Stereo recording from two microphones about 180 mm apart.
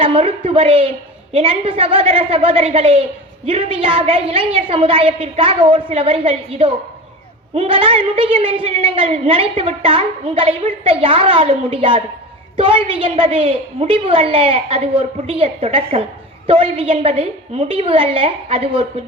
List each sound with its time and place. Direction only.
0.0 s a woman's voice: 30° right (ahead or behind)